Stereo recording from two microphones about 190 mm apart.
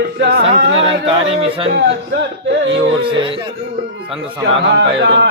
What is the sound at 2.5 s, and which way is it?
Speech, 70° right (ahead or behind).